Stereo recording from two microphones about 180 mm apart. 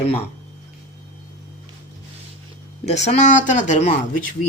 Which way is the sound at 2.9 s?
40° left (ahead or behind).